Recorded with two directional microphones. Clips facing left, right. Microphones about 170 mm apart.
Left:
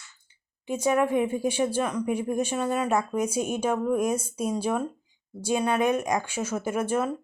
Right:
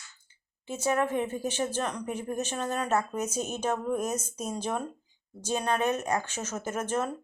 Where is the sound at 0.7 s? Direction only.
15° left (ahead or behind).